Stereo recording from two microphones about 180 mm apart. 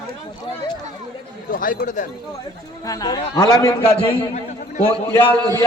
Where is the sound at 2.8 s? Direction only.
20° left (ahead or behind).